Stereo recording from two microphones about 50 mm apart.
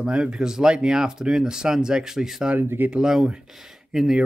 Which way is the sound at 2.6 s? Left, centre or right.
Right.